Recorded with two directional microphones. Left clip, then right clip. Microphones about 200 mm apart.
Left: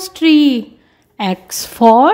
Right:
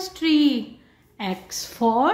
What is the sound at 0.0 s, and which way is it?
A woman's voice, 40° left (ahead or behind).